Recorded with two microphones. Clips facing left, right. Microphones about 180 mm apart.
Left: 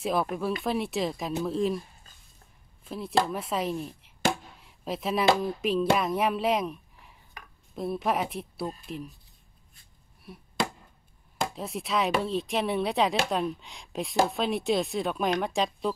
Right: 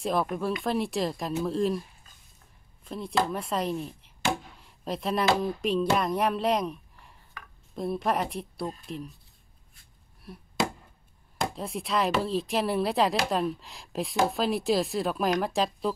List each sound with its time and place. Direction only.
0.0 s speech: centre (ahead or behind)
2.8 s speech: 5° left (ahead or behind)
7.4 s chopping: 15° left (ahead or behind)
7.7 s speech: centre (ahead or behind)
10.2 s chop: centre (ahead or behind)
11.5 s speech: centre (ahead or behind)